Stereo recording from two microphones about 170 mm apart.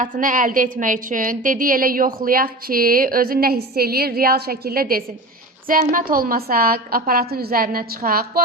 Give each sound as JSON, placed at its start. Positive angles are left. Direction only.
{"t": 0.0, "sound": "a woman's voice", "side_deg": -50}